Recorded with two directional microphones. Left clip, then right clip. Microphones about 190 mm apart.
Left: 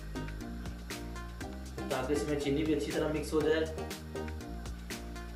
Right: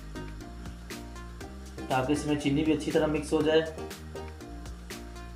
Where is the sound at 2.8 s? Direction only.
Centre (ahead or behind).